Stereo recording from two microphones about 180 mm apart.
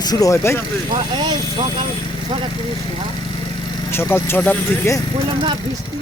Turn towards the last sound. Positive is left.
turn(degrees=10)  # may be behind; listen again after turning